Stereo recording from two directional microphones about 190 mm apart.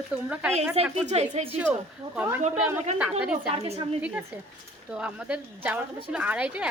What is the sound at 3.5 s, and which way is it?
Speech, 30° right (ahead or behind).